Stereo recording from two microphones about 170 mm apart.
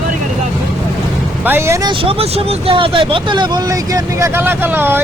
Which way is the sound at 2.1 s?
35° right (ahead or behind).